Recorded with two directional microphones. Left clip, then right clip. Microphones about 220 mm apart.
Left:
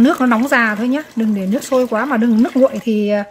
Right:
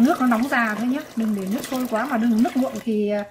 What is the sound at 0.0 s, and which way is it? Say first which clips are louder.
A woman's voice: left 6 dB; 45° left (ahead or behind).